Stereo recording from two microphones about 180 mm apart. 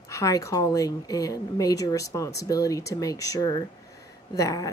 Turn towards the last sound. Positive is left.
turn(degrees=20)  # may be behind; listen again after turning